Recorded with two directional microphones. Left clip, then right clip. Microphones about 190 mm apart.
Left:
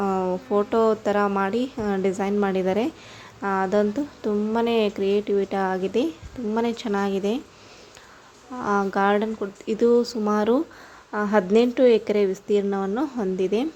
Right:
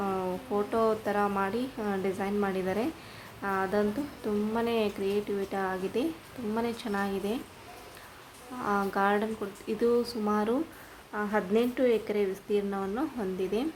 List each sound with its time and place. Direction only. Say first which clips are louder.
0.0 s a woman's voice: left 7 dB; 35° left (ahead or behind)
8.5 s a woman's voice: left 6 dB; 35° left (ahead or behind)